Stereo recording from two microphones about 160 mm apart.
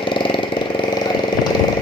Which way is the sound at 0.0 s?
30° left (ahead or behind).